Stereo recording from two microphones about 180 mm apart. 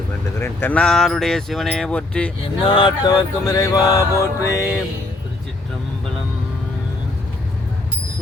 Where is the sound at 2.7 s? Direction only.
25° left (ahead or behind).